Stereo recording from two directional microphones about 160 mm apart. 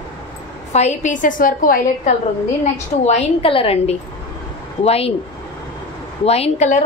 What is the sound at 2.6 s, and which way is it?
A woman's voice, 45° left (ahead or behind).